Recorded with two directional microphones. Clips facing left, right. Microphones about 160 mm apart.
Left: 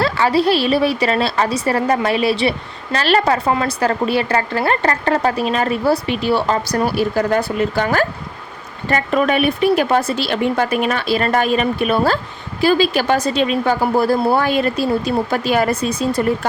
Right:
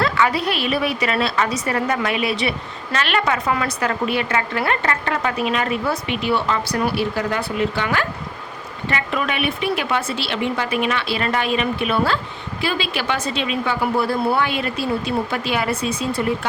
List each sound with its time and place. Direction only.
0.0 s a woman's voice: 30° left (ahead or behind)